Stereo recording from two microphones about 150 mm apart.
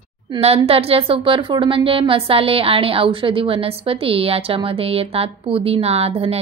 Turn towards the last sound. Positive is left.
turn(degrees=-40)  # may be behind; listen again after turning